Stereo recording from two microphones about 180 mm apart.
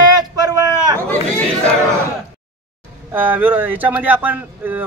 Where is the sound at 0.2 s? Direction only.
20° right (ahead or behind).